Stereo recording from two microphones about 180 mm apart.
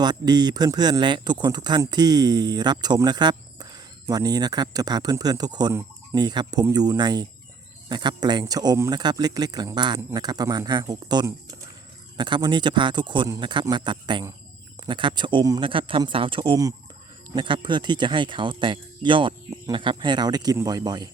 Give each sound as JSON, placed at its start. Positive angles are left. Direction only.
{"t": 0.0, "sound": "speech", "side_deg": -25}